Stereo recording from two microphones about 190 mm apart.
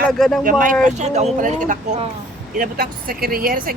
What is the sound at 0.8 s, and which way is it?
A woman's voice, 35° right (ahead or behind).